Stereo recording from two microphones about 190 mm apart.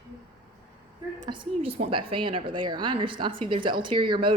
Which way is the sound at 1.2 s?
25° right (ahead or behind).